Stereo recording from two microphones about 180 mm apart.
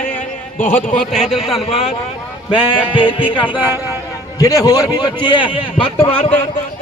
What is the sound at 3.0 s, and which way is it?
Speech, 30° left (ahead or behind).